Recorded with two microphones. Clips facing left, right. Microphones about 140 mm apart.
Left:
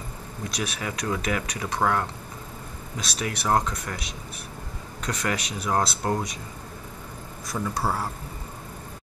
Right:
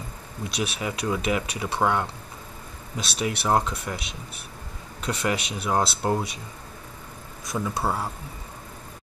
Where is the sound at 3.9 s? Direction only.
15° right (ahead or behind).